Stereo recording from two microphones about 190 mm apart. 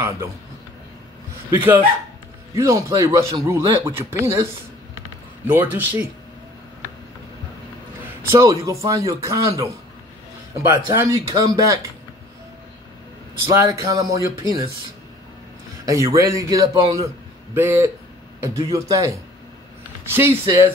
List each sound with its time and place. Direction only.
1.6 s speech: 10° right (ahead or behind)
5.5 s speech: 10° right (ahead or behind)
8.3 s speech: 15° right (ahead or behind)
10.7 s speech: 15° right (ahead or behind)
13.5 s speech: 20° right (ahead or behind)
15.8 s speech: 20° right (ahead or behind)